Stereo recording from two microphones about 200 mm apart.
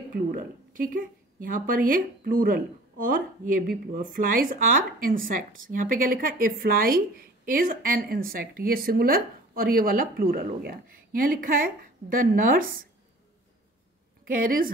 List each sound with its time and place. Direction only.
0.1 s speech: 45° right (ahead or behind)
14.2 s speech: 45° right (ahead or behind)